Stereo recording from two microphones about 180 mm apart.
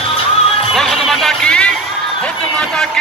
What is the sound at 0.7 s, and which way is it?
Music, centre (ahead or behind).